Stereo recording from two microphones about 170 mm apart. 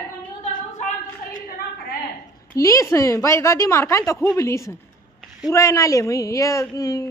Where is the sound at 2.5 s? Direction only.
20° left (ahead or behind).